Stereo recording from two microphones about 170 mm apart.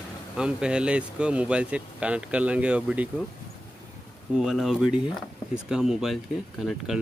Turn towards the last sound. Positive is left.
turn(degrees=-5)  # may be behind; listen again after turning